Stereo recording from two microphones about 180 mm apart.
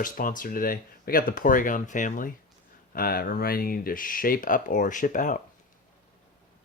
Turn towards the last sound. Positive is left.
turn(degrees=45)  # may be behind; listen again after turning